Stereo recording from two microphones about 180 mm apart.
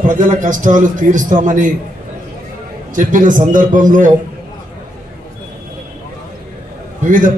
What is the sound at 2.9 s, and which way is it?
A man's voice, 45° right (ahead or behind).